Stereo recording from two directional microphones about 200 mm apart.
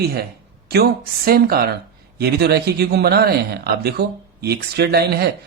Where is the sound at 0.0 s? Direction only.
50° right (ahead or behind).